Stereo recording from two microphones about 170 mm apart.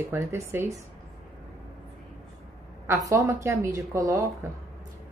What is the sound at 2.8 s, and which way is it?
Speech, 15° right (ahead or behind).